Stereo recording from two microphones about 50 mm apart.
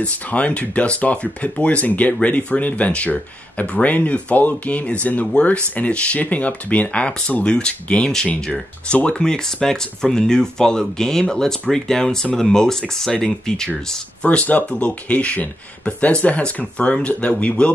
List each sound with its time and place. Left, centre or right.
0.0 s speech: left; by 13.7 s centre
14.2 s speech: left